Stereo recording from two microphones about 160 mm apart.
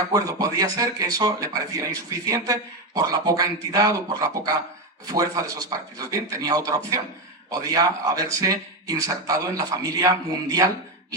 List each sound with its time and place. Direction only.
0.1 s speech: 20° right (ahead or behind)